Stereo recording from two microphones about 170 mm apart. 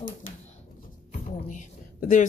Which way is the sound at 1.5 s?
50° left (ahead or behind).